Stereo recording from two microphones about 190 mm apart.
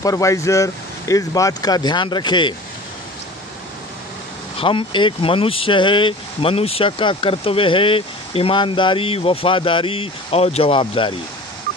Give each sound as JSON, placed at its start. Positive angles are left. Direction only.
{"t": 0.0, "sound": "speech", "side_deg": 15}
{"t": 4.6, "sound": "speech", "side_deg": 25}